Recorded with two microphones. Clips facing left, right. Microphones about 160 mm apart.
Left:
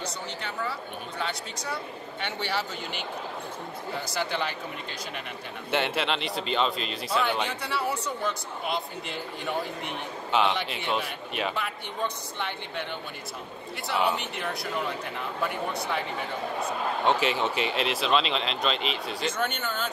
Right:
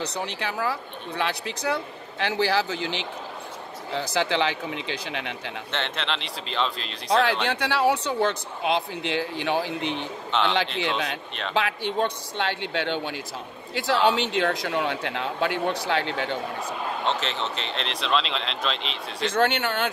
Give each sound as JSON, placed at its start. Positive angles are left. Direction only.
{"t": 0.2, "sound": "speech", "side_deg": -80}
{"t": 5.7, "sound": "speech", "side_deg": 10}
{"t": 7.1, "sound": "speech", "side_deg": -90}
{"t": 10.3, "sound": "a man's voice", "side_deg": 10}
{"t": 11.5, "sound": "speech", "side_deg": -90}
{"t": 17.0, "sound": "speech", "side_deg": 10}
{"t": 19.3, "sound": "speech", "side_deg": -70}